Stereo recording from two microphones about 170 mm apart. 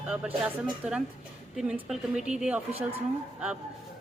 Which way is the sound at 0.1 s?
5° right (ahead or behind).